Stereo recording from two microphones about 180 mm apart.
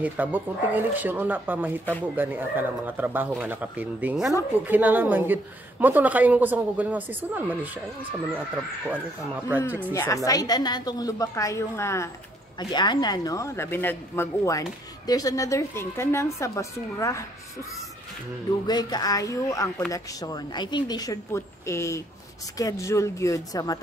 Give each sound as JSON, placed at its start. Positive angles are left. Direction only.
{"t": 0.0, "sound": "speech", "side_deg": -10}
{"t": 8.8, "sound": "speech", "side_deg": -10}
{"t": 9.9, "sound": "a woman's voice", "side_deg": 20}
{"t": 18.7, "sound": "a woman's voice", "side_deg": 20}